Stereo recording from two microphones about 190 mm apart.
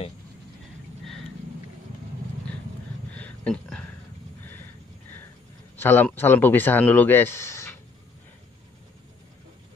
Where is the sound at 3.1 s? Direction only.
5° left (ahead or behind).